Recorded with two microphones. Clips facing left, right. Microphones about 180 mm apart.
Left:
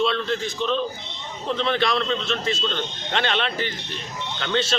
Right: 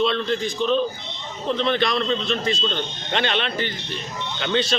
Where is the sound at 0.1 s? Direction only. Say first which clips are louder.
Right 2 dB; centre (ahead or behind).